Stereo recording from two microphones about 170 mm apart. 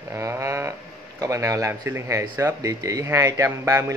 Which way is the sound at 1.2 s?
20° right (ahead or behind).